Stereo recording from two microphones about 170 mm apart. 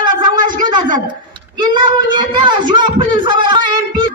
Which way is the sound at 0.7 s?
25° right (ahead or behind).